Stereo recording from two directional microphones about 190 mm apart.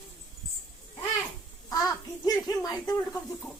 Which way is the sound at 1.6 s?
20° left (ahead or behind).